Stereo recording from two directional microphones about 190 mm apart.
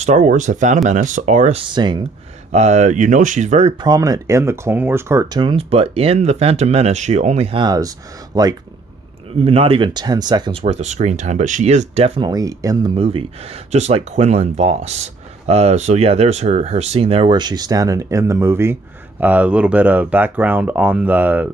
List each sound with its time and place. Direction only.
0.0 s speech: 40° right (ahead or behind)
1.6 s speech: 25° right (ahead or behind)
2.5 s speech: 35° right (ahead or behind)
3.8 s speech: 20° right (ahead or behind)
5.4 s speech: 30° right (ahead or behind)
9.4 s speech: 30° right (ahead or behind)
12.2 s speech: 20° right (ahead or behind)
12.9 s speech: 30° right (ahead or behind); by 21.5 s 10° right (ahead or behind)